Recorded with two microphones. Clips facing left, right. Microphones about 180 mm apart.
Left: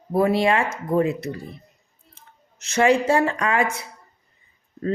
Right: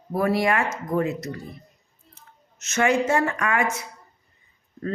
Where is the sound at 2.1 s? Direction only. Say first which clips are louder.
Left 1 dB; 30° left (ahead or behind).